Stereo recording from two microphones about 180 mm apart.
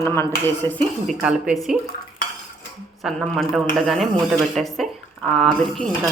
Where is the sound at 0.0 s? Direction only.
15° left (ahead or behind).